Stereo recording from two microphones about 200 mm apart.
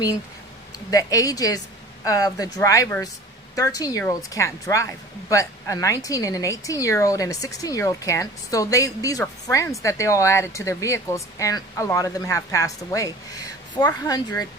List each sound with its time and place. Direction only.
0.9 s speech: 15° left (ahead or behind)